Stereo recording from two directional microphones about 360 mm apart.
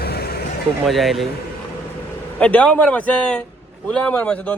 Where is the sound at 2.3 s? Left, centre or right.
Centre.